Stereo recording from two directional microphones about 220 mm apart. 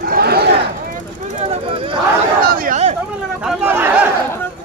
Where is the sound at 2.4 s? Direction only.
40° right (ahead or behind).